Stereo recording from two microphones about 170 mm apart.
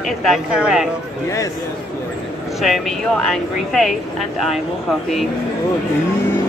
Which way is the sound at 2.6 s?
Centre (ahead or behind).